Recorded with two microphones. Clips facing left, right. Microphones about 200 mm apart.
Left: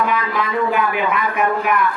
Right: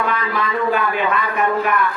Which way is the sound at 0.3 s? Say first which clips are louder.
Even; 15° left (ahead or behind).